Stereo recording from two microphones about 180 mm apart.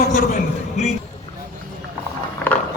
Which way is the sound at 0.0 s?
50° left (ahead or behind).